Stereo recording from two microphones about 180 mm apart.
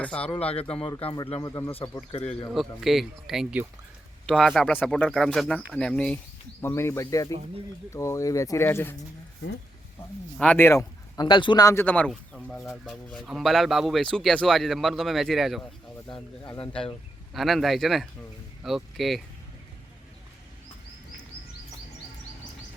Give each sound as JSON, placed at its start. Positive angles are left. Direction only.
{"t": 0.0, "sound": "speech", "side_deg": 5}
{"t": 0.3, "sound": "speech", "side_deg": 30}
{"t": 1.5, "sound": "speech", "side_deg": 15}
{"t": 2.5, "sound": "speech", "side_deg": 0}
{"t": 10.3, "sound": "speech", "side_deg": 5}
{"t": 17.3, "sound": "speech", "side_deg": 0}